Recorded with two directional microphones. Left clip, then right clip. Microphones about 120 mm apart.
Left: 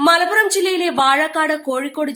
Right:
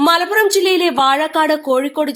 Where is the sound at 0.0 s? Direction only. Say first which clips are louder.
Right 1 dB; 40° right (ahead or behind).